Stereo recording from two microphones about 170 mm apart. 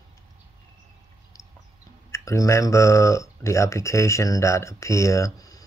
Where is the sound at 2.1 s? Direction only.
15° left (ahead or behind).